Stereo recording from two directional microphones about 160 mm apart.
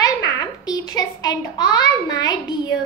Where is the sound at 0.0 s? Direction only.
25° left (ahead or behind).